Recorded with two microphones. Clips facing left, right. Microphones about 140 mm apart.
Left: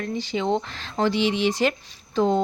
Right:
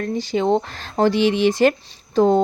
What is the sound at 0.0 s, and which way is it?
Speech, 45° right (ahead or behind).